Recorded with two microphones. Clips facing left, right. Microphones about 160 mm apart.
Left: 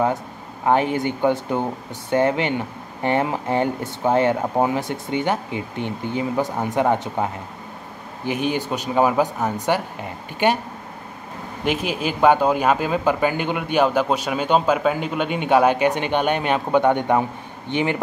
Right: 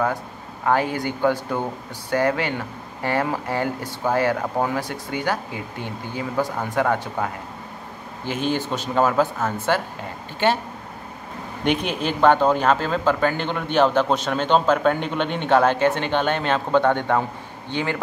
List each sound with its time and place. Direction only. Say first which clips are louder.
0.7 s speech: left 2 dB; 20° left (ahead or behind)
8.3 s speech: left 1 dB; 15° left (ahead or behind)
11.6 s speech: even; 5° left (ahead or behind)